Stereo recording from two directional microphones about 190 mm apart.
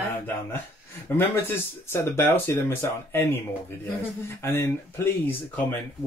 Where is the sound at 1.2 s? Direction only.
10° left (ahead or behind).